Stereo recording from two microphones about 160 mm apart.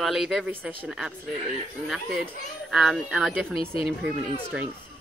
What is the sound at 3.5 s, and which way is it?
Speech, 35° left (ahead or behind).